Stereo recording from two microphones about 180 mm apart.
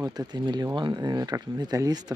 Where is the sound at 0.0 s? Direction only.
20° right (ahead or behind).